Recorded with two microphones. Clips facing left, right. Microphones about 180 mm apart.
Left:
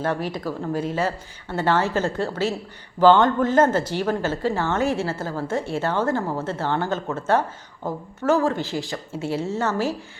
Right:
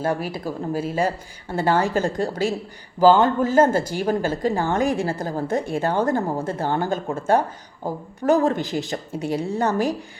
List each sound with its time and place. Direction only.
0.0 s a woman's voice: 10° right (ahead or behind)